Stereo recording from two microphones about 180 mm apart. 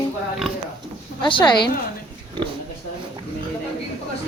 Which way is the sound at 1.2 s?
25° left (ahead or behind).